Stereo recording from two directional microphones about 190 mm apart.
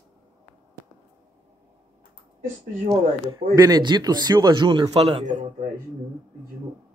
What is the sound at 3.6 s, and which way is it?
A man's voice, 20° right (ahead or behind).